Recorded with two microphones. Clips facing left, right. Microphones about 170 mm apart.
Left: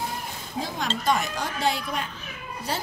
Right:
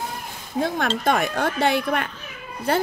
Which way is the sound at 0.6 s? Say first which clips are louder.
Right 7 dB; 60° right (ahead or behind).